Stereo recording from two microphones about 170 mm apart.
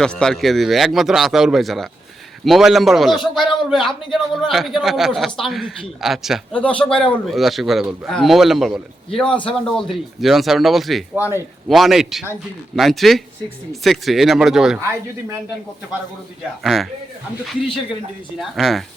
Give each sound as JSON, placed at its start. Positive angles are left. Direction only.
{"t": 0.0, "sound": "a man's voice", "side_deg": 5}
{"t": 16.6, "sound": "a man's voice", "side_deg": 0}